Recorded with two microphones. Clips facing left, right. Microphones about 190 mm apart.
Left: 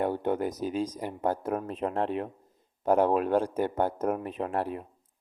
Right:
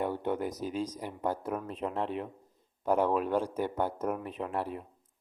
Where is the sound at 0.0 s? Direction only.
45° left (ahead or behind).